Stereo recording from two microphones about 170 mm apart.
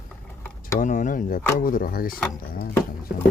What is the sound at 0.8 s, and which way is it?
Speech, 50° left (ahead or behind).